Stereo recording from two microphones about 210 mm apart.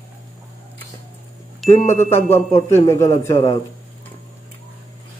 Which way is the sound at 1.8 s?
35° left (ahead or behind).